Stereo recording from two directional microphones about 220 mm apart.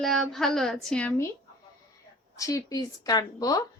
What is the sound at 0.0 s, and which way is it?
Speech, centre (ahead or behind).